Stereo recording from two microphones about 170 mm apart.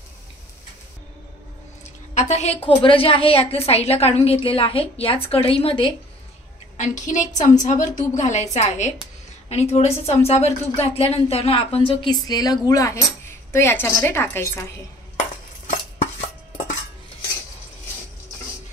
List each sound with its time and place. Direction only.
2.1 s a woman's voice: 40° left (ahead or behind)
6.8 s a woman's voice: 45° left (ahead or behind); by 14.5 s 15° left (ahead or behind)